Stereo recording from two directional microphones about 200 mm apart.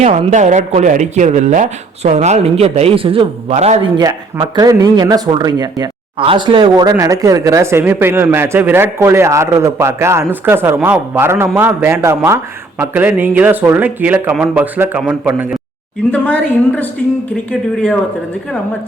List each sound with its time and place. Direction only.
0.0 s speech: 35° right (ahead or behind)
3.9 s speech: 20° right (ahead or behind)
16.1 s a woman's voice: 5° left (ahead or behind)